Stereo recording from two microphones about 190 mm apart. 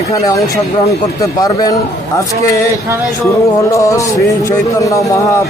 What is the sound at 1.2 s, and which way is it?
Speech, 20° left (ahead or behind).